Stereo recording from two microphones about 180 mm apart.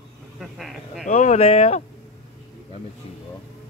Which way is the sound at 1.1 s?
40° left (ahead or behind).